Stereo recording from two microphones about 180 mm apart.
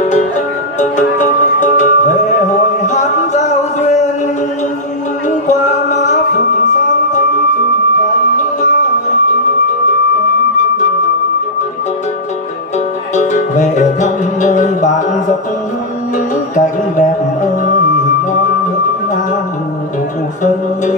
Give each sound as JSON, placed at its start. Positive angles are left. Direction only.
{"t": 0.7, "sound": "music", "side_deg": 45}
{"t": 2.8, "sound": "a sound", "side_deg": 40}
{"t": 5.5, "sound": "music", "side_deg": 40}
{"t": 13.1, "sound": "music", "side_deg": 40}
{"t": 16.5, "sound": "music", "side_deg": 45}